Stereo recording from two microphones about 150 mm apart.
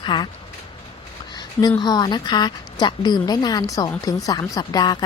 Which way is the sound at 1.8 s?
30° left (ahead or behind).